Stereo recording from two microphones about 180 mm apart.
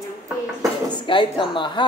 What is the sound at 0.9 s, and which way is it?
Speech, 25° left (ahead or behind).